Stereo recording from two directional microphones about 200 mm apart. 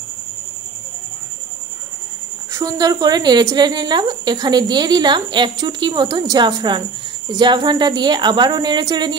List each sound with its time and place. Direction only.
2.5 s a woman's voice: 20° right (ahead or behind)